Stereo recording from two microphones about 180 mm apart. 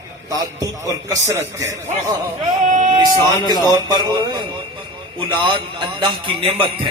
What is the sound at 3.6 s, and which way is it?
Music, 25° right (ahead or behind).